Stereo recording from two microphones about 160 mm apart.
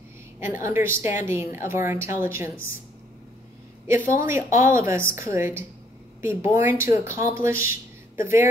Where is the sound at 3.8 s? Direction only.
15° right (ahead or behind).